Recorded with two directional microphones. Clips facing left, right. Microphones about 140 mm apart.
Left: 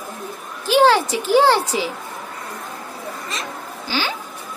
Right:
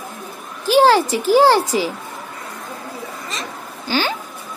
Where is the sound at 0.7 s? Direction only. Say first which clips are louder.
Right 2 dB; 40° right (ahead or behind).